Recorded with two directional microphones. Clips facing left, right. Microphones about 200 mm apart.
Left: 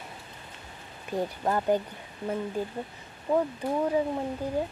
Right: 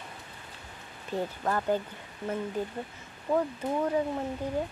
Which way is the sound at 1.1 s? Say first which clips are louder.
Left 2 dB; 15° left (ahead or behind).